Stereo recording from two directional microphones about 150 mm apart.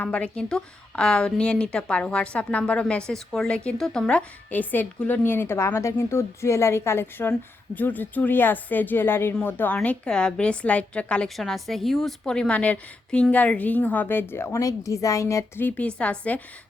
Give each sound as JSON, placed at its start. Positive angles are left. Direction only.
{"t": 0.0, "sound": "a woman's voice", "side_deg": 5}